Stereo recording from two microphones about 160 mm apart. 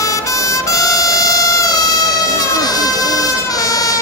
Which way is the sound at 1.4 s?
20° left (ahead or behind).